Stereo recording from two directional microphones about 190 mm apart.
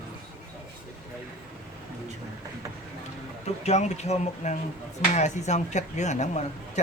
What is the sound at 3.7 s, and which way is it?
Speech, 35° left (ahead or behind).